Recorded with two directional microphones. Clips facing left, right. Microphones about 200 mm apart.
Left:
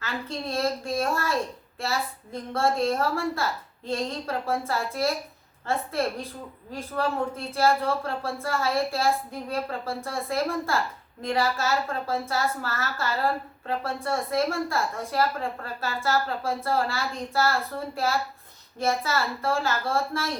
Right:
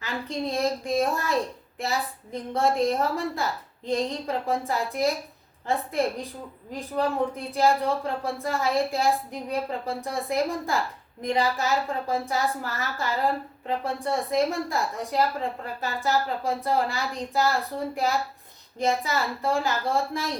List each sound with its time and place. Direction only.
0.0 s a woman's voice: 15° right (ahead or behind)